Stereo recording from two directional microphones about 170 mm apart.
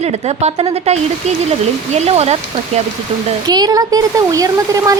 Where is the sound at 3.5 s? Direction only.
25° right (ahead or behind).